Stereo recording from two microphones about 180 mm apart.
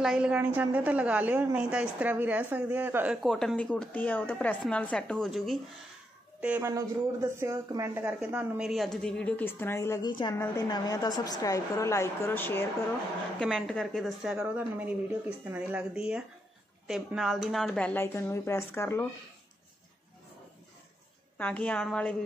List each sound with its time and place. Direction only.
0.0 s a woman's voice: 5° right (ahead or behind); by 19.0 s 15° left (ahead or behind)
21.4 s speech: 10° left (ahead or behind)